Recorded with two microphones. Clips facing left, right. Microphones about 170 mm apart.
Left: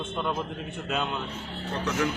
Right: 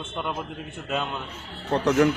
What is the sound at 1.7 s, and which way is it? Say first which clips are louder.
Speech: right 8 dB; 60° right (ahead or behind).